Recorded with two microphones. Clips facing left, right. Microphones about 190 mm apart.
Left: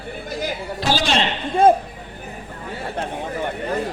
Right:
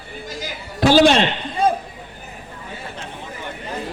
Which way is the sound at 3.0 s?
60° left (ahead or behind).